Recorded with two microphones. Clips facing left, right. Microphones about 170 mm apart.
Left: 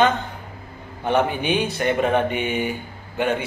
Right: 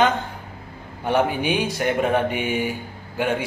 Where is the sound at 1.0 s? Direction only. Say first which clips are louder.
Even; 10° right (ahead or behind).